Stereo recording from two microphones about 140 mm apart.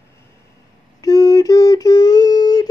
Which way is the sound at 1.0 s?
25° left (ahead or behind).